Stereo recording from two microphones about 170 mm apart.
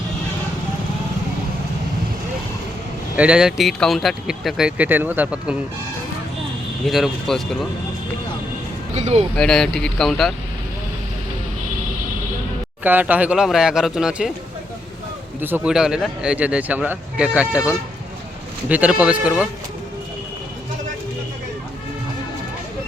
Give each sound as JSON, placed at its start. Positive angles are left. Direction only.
{"t": 3.2, "sound": "speech", "side_deg": -5}
{"t": 6.8, "sound": "speech", "side_deg": 0}
{"t": 9.0, "sound": "speech", "side_deg": -40}
{"t": 9.3, "sound": "speech", "side_deg": 5}
{"t": 12.8, "sound": "speech", "side_deg": -10}
{"t": 15.4, "sound": "speech", "side_deg": -10}
{"t": 18.7, "sound": "speech", "side_deg": -10}